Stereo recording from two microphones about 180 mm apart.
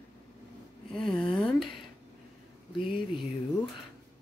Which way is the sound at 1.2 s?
5° left (ahead or behind).